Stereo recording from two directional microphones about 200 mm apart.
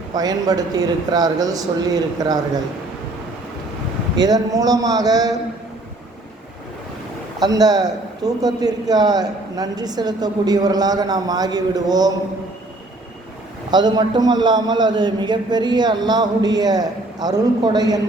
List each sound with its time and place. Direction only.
0.1 s a man's voice: 20° right (ahead or behind)
4.2 s a man's voice: 20° right (ahead or behind)
7.4 s a man's voice: 20° right (ahead or behind)
13.7 s a man's voice: 20° right (ahead or behind)